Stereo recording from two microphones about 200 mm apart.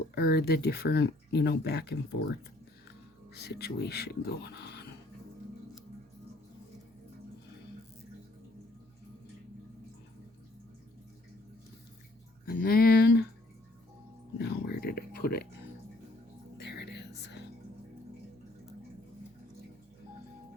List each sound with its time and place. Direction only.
0.1 s speech: 50° left (ahead or behind)
3.3 s speech: 55° left (ahead or behind)
12.5 s speech: 50° left (ahead or behind)
14.3 s speech: 55° left (ahead or behind)
16.6 s whispering: 55° left (ahead or behind)